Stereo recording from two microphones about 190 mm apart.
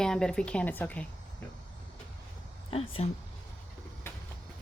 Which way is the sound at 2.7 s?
30° left (ahead or behind).